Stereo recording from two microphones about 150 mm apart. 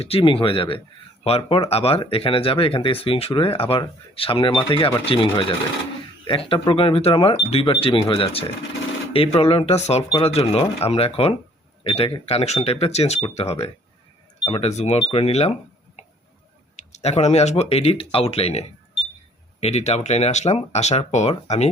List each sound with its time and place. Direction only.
0.0 s speech: 40° left (ahead or behind)
16.9 s speech: 45° left (ahead or behind)